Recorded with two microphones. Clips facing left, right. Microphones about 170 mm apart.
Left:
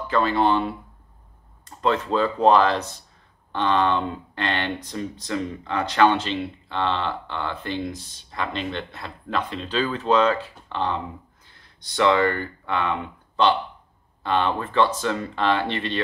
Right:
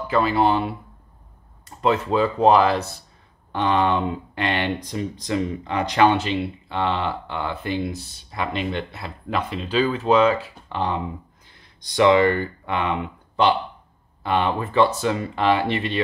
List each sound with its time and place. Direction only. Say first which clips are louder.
0.1 s speech: right 1 dB; 10° right (ahead or behind)